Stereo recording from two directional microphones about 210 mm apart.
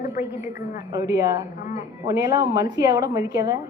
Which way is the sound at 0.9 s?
15° right (ahead or behind).